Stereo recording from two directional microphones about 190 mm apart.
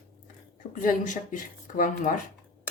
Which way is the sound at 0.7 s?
45° left (ahead or behind).